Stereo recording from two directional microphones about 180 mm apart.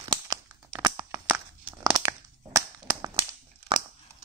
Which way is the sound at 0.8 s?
20° right (ahead or behind).